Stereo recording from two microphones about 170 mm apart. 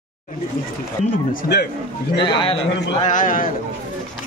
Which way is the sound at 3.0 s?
50° left (ahead or behind).